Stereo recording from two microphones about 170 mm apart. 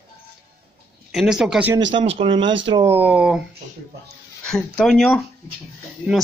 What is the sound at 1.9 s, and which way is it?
Speech, 30° right (ahead or behind).